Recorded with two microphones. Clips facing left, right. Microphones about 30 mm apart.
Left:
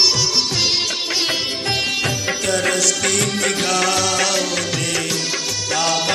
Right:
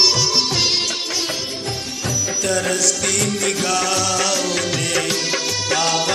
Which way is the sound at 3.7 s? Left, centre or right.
Centre.